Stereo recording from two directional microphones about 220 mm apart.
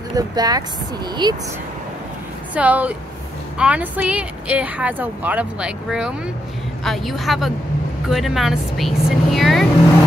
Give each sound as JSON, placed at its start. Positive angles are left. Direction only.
{"t": 0.1, "sound": "speech", "side_deg": -15}
{"t": 2.5, "sound": "speech", "side_deg": -5}